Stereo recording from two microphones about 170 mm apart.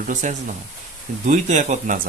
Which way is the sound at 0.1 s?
45° right (ahead or behind).